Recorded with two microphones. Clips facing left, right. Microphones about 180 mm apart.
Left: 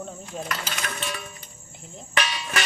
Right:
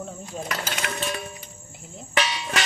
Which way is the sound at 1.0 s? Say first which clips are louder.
Right 4 dB; 35° right (ahead or behind).